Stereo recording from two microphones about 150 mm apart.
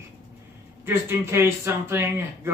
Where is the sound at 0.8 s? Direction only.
15° right (ahead or behind).